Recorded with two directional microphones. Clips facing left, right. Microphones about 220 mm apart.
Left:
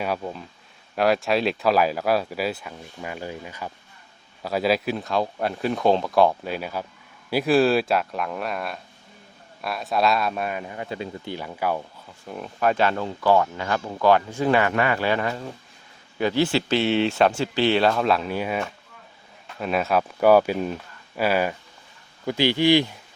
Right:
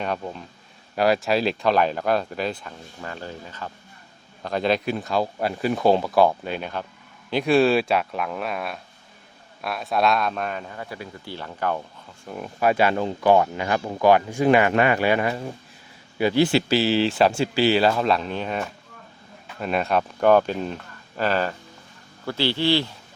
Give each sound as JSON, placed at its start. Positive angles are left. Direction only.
{"t": 0.0, "sound": "speech", "side_deg": 5}
{"t": 12.2, "sound": "speech", "side_deg": -5}